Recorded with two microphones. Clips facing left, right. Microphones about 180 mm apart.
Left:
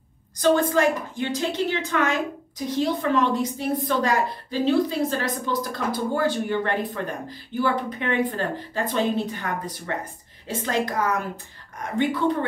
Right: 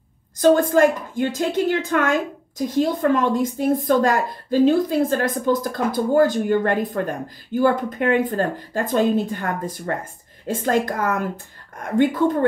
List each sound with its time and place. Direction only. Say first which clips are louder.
0.4 s a woman's voice: right 5 dB; 50° right (ahead or behind)